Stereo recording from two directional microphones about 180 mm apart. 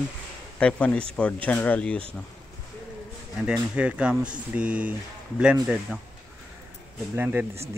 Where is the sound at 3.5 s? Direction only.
5° right (ahead or behind).